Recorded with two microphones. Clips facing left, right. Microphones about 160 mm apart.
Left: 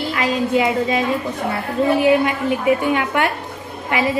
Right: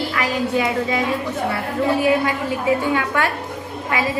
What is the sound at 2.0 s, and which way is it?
A woman's voice, 20° left (ahead or behind).